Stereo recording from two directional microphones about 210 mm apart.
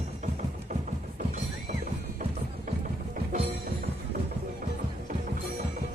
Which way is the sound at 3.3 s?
40° right (ahead or behind).